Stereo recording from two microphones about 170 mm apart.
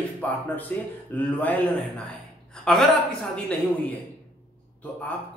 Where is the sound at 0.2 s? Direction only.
10° left (ahead or behind).